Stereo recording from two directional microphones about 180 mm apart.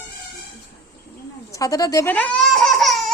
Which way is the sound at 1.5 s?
20° left (ahead or behind).